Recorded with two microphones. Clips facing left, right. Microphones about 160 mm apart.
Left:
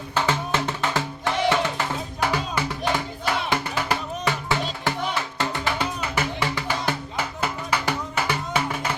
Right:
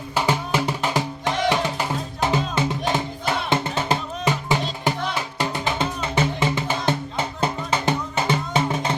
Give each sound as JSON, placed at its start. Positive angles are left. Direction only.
{"t": 0.1, "sound": "music", "side_deg": -15}